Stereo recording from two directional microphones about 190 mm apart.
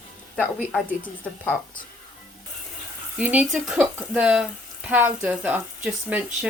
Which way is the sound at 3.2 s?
5° right (ahead or behind).